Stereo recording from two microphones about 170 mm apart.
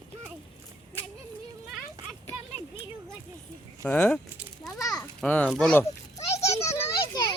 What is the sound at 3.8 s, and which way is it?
Speech, 10° left (ahead or behind).